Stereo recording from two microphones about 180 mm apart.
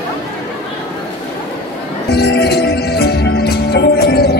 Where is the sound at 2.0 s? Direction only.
65° left (ahead or behind).